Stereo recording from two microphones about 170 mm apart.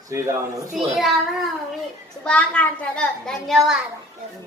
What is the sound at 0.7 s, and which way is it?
Speech, centre (ahead or behind).